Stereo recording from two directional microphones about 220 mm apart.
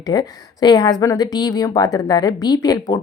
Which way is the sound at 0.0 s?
20° left (ahead or behind).